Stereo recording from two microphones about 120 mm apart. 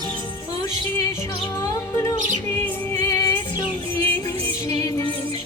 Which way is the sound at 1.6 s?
25° left (ahead or behind).